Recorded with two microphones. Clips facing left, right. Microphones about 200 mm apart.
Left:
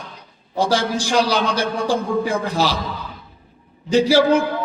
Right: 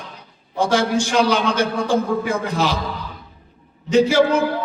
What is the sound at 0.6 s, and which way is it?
A man's voice, 35° left (ahead or behind).